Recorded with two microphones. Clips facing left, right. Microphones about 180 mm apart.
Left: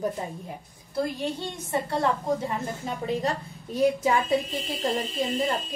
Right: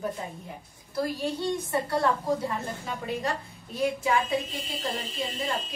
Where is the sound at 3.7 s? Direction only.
40° left (ahead or behind).